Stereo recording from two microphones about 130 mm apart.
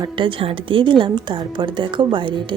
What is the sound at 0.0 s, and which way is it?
A woman's voice, 40° right (ahead or behind).